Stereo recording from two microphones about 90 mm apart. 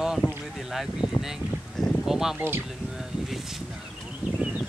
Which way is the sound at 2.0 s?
5° right (ahead or behind).